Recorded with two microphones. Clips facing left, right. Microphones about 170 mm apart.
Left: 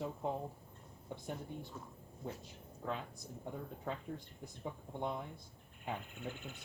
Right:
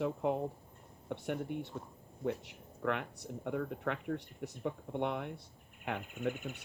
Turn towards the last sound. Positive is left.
turn(degrees=-75)  # may be behind; listen again after turning